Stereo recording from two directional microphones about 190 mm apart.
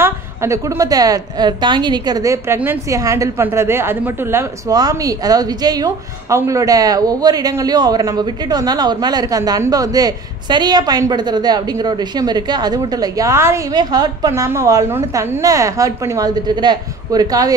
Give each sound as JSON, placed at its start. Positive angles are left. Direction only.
{"t": 0.0, "sound": "a woman's voice", "side_deg": -15}